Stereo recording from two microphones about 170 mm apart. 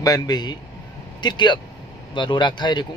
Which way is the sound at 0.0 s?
20° left (ahead or behind).